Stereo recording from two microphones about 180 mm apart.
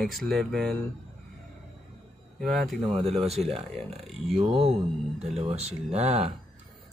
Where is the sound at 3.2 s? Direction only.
35° right (ahead or behind).